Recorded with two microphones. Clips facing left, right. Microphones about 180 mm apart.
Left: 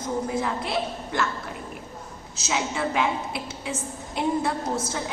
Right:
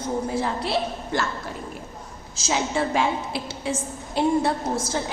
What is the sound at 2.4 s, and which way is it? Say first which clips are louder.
A woman's voice: right 3 dB; 35° right (ahead or behind).